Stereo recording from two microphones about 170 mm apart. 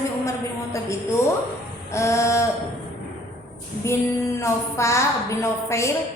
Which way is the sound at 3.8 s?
15° left (ahead or behind).